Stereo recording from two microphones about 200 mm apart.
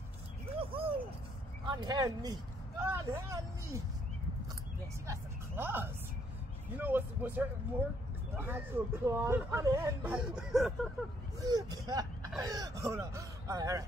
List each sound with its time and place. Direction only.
0.6 s a sound: 30° right (ahead or behind)
1.7 s speech: 20° right (ahead or behind)
5.0 s a woman's voice: 10° right (ahead or behind)
11.4 s speech: 20° right (ahead or behind)